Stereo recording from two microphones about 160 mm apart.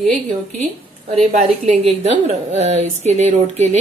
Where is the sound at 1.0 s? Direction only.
40° right (ahead or behind).